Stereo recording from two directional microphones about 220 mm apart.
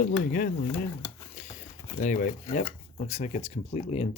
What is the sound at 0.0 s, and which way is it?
Speech, 40° left (ahead or behind).